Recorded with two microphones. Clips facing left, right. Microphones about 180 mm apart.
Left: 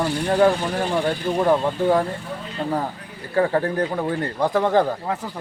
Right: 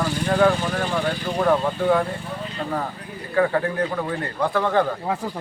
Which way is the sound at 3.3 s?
35° left (ahead or behind).